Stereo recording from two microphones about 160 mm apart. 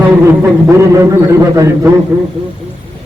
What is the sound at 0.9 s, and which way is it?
Speech, 20° right (ahead or behind).